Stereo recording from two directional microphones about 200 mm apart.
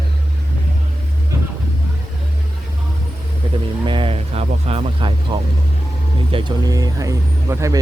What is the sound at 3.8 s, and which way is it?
Speech, 25° right (ahead or behind).